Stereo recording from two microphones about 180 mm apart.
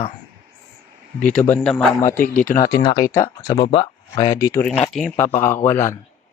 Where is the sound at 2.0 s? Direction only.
50° left (ahead or behind).